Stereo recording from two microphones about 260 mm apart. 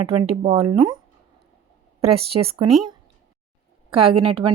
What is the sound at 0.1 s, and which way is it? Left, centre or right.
Speech, right.